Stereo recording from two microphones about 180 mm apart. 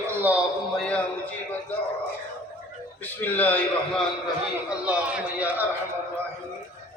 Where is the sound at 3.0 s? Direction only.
10° left (ahead or behind).